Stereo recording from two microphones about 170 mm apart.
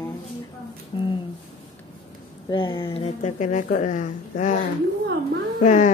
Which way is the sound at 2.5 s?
30° left (ahead or behind).